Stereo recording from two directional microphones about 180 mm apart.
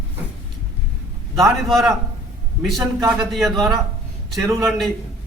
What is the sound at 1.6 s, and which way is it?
Speech, centre (ahead or behind).